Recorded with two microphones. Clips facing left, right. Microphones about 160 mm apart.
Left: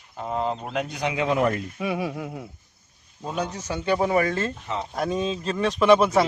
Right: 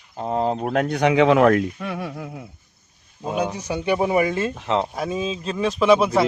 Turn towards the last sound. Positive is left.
turn(degrees=0)  # may be behind; listen again after turning